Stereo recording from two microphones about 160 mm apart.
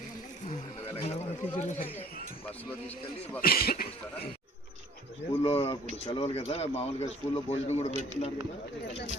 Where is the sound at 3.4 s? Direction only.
70° left (ahead or behind).